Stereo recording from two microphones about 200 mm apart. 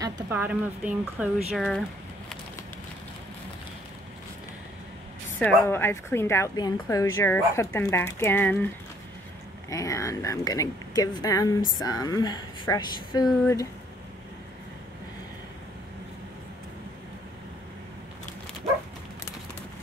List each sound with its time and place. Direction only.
0.0 s speech: 10° right (ahead or behind)
1.6 s a sound: 5° left (ahead or behind)
5.4 s a woman's voice: 10° left (ahead or behind)
9.7 s a woman's voice: 15° left (ahead or behind)